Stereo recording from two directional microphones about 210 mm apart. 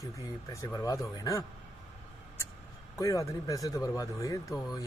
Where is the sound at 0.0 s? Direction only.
15° left (ahead or behind).